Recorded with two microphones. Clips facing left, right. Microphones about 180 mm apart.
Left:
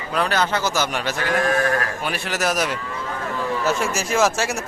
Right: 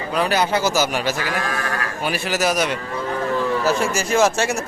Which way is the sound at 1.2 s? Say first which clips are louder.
Left 5 dB; 45° left (ahead or behind).